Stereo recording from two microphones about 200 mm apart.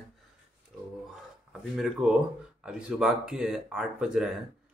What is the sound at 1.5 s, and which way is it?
Speech, centre (ahead or behind).